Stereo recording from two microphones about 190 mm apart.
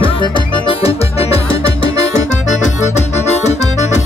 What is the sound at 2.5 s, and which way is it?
Accordion, 35° left (ahead or behind).